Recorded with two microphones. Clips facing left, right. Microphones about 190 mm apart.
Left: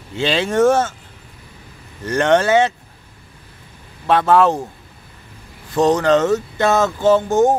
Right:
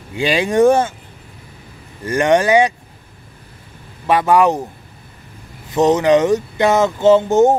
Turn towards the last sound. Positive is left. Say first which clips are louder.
# right 3 dB
turn(degrees=-20)  # may be behind; listen again after turning